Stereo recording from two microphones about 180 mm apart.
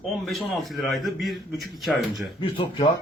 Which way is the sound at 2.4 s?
25° left (ahead or behind).